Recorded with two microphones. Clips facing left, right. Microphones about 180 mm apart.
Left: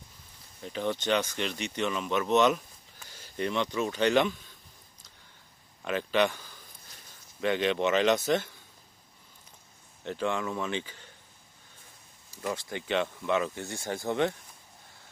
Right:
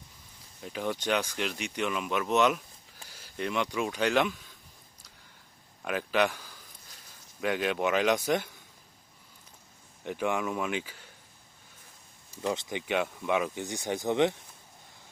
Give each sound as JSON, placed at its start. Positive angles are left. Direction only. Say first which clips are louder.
{"t": 0.6, "sound": "speech", "louder": "left 1 dB", "side_deg": -5}
{"t": 3.1, "sound": "a sound", "louder": "left 2 dB", "side_deg": -5}
{"t": 3.8, "sound": "speech", "louder": "left 3 dB", "side_deg": -5}
{"t": 5.8, "sound": "speech", "louder": "left 1 dB", "side_deg": -5}
{"t": 10.0, "sound": "speech", "louder": "right 1 dB", "side_deg": -15}
{"t": 12.4, "sound": "speech", "louder": "right 2 dB", "side_deg": -20}